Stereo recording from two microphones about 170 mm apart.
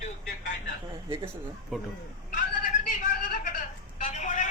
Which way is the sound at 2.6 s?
50° left (ahead or behind).